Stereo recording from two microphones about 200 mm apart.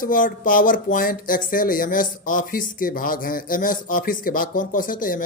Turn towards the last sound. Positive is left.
turn(degrees=45)  # may be behind; listen again after turning